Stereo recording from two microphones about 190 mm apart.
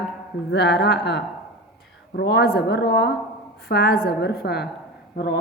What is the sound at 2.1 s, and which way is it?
A woman's voice, 55° left (ahead or behind).